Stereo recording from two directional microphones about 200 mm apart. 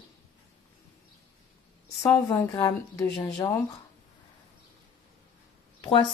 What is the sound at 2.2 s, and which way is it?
A woman's voice, 20° left (ahead or behind).